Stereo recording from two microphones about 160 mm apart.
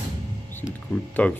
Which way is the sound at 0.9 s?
10° left (ahead or behind).